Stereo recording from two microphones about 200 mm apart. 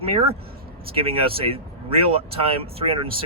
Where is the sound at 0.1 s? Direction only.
30° right (ahead or behind).